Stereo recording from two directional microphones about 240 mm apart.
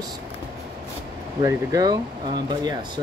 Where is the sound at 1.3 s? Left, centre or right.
Centre.